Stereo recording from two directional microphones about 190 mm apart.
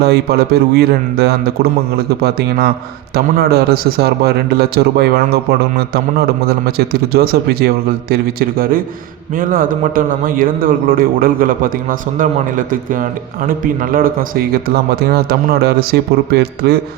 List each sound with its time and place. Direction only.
0.0 s a man's voice: 55° right (ahead or behind)
3.2 s a man's voice: 55° right (ahead or behind)